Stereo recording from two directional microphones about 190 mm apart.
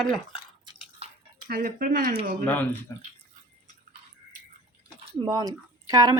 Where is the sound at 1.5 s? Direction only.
50° right (ahead or behind).